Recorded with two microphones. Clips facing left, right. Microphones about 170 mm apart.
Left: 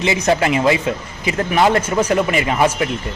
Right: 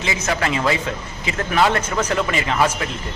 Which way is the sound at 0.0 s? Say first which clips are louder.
Left 6 dB; 25° left (ahead or behind).